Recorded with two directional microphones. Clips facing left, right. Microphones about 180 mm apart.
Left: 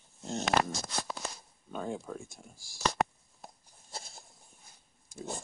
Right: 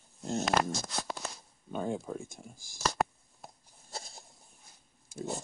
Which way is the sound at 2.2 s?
20° right (ahead or behind).